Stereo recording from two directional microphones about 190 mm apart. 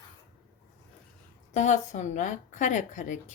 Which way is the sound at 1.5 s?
40° left (ahead or behind).